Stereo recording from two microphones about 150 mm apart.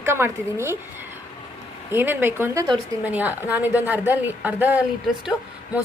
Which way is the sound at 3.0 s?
10° right (ahead or behind).